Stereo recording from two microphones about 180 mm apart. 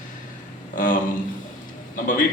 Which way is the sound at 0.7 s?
45° left (ahead or behind).